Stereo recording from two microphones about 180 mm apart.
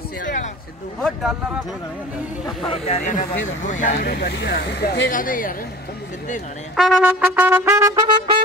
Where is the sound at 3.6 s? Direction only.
45° left (ahead or behind); by 5.1 s 65° left (ahead or behind).